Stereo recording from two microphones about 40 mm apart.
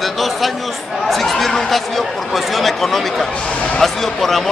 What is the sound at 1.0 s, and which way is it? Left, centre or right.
Chatter, centre.